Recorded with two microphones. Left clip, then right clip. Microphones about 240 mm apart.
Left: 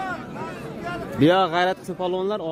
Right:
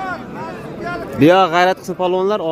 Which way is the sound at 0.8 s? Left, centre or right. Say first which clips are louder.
Right 6 dB; centre.